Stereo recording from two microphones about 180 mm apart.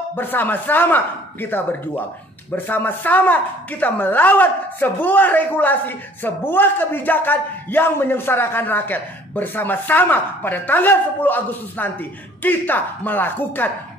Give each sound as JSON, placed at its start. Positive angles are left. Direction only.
{"t": 0.1, "sound": "a man's voice", "side_deg": 10}